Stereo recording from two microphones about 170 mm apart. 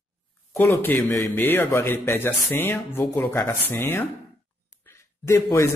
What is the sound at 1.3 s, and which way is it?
Speech, 10° left (ahead or behind).